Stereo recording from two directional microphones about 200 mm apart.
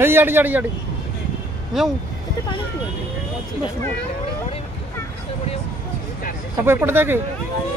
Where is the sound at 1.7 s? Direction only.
Centre (ahead or behind).